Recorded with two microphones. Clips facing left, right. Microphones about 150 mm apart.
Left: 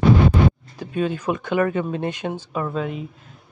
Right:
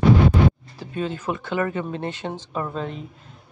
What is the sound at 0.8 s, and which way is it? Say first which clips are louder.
Speech: left 4 dB; 15° left (ahead or behind).